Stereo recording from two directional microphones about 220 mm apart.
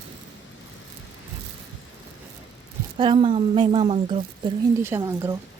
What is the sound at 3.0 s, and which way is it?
A woman's voice, 25° right (ahead or behind).